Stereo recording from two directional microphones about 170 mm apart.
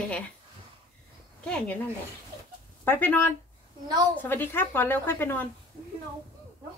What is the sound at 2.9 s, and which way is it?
A woman's voice, 10° left (ahead or behind).